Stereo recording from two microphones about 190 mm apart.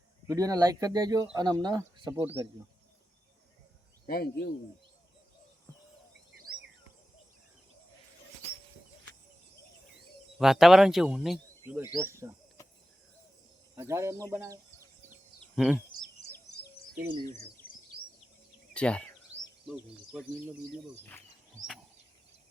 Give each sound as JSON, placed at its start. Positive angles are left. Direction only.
{"t": 0.3, "sound": "speech", "side_deg": -20}
{"t": 4.0, "sound": "speech", "side_deg": 50}
{"t": 10.3, "sound": "speech", "side_deg": 0}
{"t": 11.6, "sound": "speech", "side_deg": -15}
{"t": 13.7, "sound": "speech", "side_deg": -15}
{"t": 15.1, "sound": "a sound", "side_deg": -5}
{"t": 16.9, "sound": "speech", "side_deg": -50}
{"t": 18.7, "sound": "speech", "side_deg": 5}
{"t": 19.6, "sound": "speech", "side_deg": -5}